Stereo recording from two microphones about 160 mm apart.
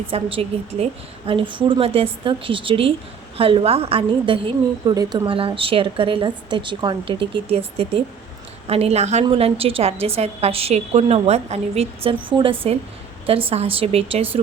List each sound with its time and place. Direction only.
0.1 s a woman's voice: 35° right (ahead or behind)